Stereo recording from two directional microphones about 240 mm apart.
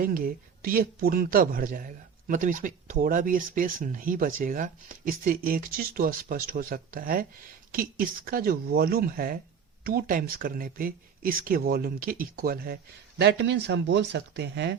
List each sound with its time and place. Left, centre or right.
0.0 s speech: right